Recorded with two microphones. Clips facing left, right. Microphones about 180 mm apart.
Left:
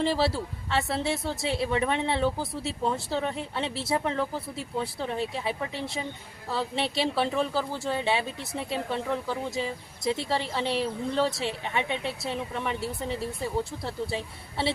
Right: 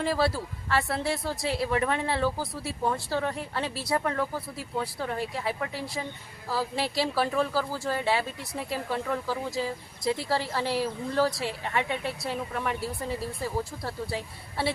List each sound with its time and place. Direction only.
0.0 s speech: 25° left (ahead or behind)